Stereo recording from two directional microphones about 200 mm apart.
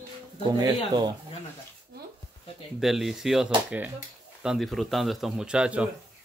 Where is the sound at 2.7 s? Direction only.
Centre (ahead or behind).